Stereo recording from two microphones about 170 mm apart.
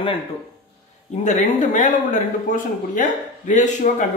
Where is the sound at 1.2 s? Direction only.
45° left (ahead or behind).